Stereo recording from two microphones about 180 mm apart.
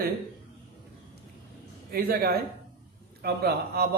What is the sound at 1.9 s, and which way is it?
Speech, 55° right (ahead or behind).